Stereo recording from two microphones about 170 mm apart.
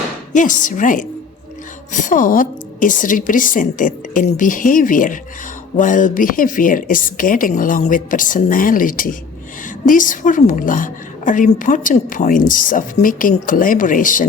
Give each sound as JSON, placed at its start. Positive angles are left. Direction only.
{"t": 0.3, "sound": "a woman's voice", "side_deg": 50}